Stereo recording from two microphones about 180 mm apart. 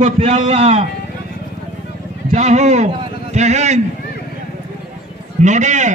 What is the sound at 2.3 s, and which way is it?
A man's voice, 40° right (ahead or behind).